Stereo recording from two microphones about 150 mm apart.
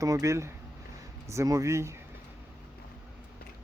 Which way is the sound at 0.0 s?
20° right (ahead or behind).